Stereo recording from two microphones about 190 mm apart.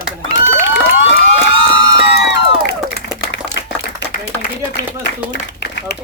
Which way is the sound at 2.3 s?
65° left (ahead or behind).